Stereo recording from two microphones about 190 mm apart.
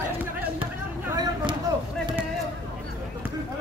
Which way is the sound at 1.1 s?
20° right (ahead or behind).